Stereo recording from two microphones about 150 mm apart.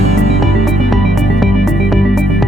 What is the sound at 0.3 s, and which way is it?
Music, centre (ahead or behind).